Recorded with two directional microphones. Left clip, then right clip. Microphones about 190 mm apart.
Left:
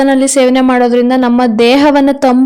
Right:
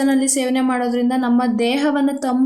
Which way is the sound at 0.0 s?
40° left (ahead or behind).